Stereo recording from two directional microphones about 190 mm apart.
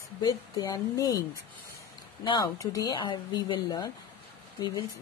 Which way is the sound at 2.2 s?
20° left (ahead or behind).